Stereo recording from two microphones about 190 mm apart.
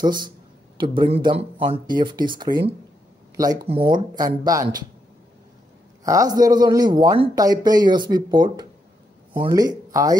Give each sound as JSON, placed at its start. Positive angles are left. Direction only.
{"t": 0.0, "sound": "speech", "side_deg": -20}
{"t": 3.9, "sound": "speech", "side_deg": -20}
{"t": 6.0, "sound": "speech", "side_deg": -20}